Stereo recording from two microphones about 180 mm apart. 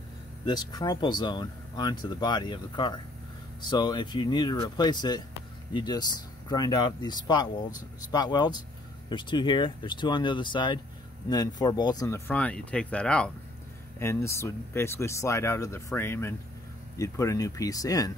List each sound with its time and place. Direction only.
0.5 s speech: 20° left (ahead or behind)
12.3 s speech: 10° left (ahead or behind)